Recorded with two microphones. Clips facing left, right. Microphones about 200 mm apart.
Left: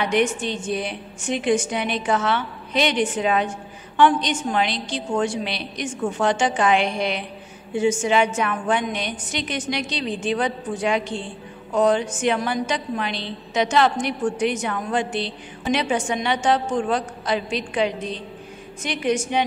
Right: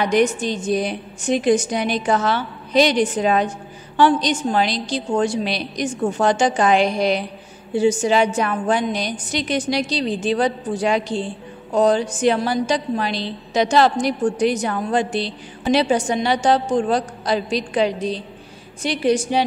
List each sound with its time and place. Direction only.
0.0 s a woman's voice: 40° right (ahead or behind)